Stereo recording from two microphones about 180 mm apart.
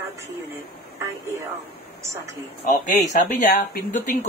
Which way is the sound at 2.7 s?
45° left (ahead or behind).